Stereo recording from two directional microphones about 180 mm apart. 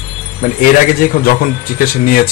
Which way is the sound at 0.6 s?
50° left (ahead or behind).